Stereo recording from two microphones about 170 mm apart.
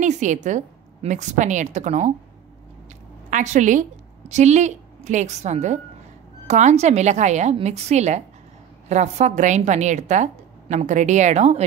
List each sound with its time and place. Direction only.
0.0 s a woman's voice: 45° right (ahead or behind)
3.3 s a woman's voice: 45° right (ahead or behind)